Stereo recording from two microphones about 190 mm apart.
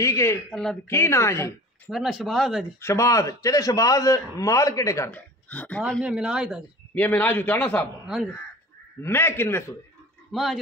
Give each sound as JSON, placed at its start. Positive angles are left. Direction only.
{"t": 0.0, "sound": "a man's voice", "side_deg": 15}
{"t": 0.5, "sound": "speech", "side_deg": 0}
{"t": 0.8, "sound": "a man's voice", "side_deg": 15}
{"t": 1.9, "sound": "speech", "side_deg": 0}
{"t": 2.8, "sound": "a man's voice", "side_deg": 15}
{"t": 6.9, "sound": "a man's voice", "side_deg": 10}
{"t": 9.0, "sound": "a man's voice", "side_deg": 10}
{"t": 10.3, "sound": "speech", "side_deg": 0}